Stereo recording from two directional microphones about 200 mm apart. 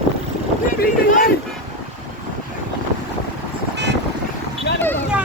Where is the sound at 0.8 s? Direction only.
45° left (ahead or behind).